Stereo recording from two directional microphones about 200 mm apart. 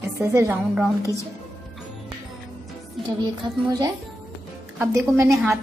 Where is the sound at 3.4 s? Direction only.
20° right (ahead or behind).